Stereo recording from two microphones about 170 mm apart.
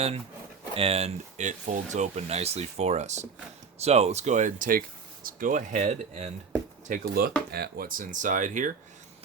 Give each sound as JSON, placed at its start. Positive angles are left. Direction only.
{"t": 0.7, "sound": "speech", "side_deg": -35}
{"t": 6.8, "sound": "speech", "side_deg": -55}